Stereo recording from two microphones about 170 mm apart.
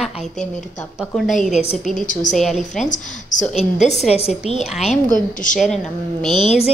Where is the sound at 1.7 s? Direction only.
Centre (ahead or behind).